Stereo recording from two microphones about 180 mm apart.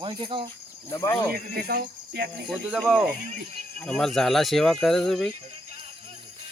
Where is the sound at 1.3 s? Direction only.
60° right (ahead or behind).